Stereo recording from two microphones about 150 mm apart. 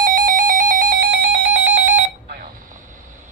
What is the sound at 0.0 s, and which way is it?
Alarm clock, 65° right (ahead or behind).